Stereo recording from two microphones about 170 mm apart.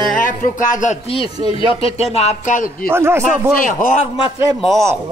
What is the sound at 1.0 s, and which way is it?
Speech, 35° left (ahead or behind).